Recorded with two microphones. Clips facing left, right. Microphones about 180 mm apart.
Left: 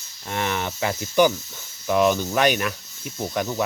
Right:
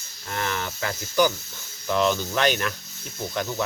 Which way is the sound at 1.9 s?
10° left (ahead or behind).